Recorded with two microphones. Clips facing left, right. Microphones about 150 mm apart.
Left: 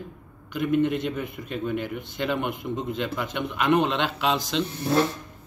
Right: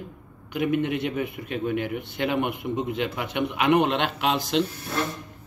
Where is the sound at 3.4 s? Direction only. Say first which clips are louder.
Right 1 dB; 15° right (ahead or behind).